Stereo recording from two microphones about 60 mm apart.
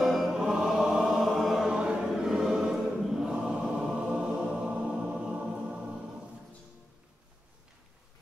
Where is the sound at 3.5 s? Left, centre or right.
Centre.